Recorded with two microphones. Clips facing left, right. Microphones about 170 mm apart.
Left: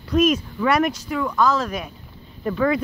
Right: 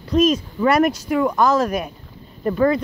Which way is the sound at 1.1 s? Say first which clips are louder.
Right 3 dB; 55° right (ahead or behind).